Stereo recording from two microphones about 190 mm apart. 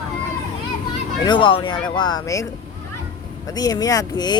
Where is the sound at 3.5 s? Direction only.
20° left (ahead or behind).